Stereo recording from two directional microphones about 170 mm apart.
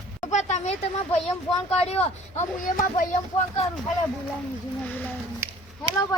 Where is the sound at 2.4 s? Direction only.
50° left (ahead or behind).